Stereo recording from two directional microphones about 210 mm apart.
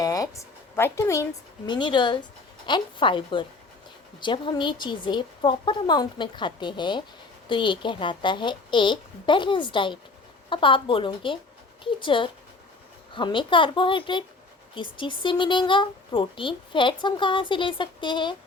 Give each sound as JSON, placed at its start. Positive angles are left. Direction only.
{"t": 0.0, "sound": "a woman's voice", "side_deg": 15}